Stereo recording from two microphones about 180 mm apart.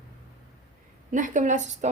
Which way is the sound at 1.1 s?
45° right (ahead or behind).